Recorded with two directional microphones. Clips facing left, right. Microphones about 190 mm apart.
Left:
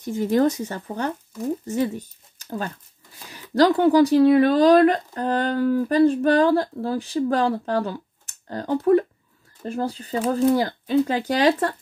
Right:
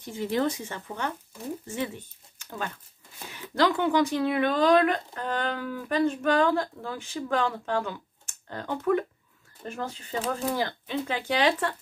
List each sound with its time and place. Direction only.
0.0 s speech: 45° left (ahead or behind)